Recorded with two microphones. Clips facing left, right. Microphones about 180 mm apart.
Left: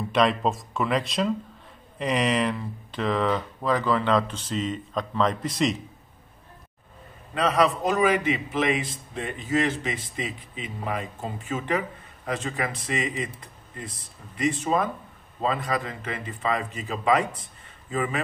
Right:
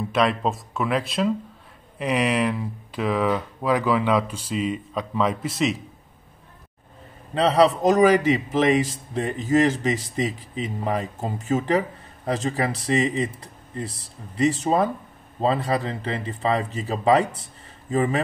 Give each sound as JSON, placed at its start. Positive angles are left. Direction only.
{"t": 0.1, "sound": "speech", "side_deg": 0}
{"t": 7.3, "sound": "speech", "side_deg": -30}
{"t": 17.4, "sound": "a sound", "side_deg": -35}